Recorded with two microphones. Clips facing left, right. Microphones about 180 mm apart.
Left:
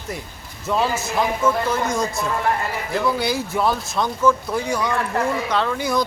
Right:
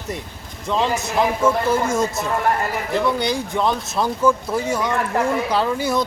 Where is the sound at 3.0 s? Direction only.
5° left (ahead or behind).